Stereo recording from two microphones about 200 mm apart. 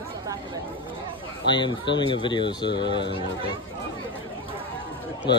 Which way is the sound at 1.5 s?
25° left (ahead or behind).